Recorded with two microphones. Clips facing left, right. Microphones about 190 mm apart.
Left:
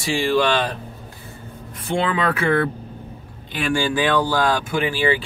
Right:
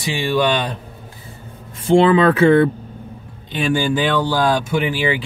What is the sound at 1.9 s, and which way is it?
Speech, 30° right (ahead or behind).